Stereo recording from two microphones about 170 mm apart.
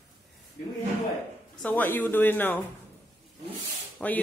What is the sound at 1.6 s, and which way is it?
A woman's voice, 10° left (ahead or behind).